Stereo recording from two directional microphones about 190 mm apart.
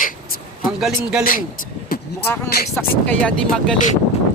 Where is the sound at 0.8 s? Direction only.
5° right (ahead or behind).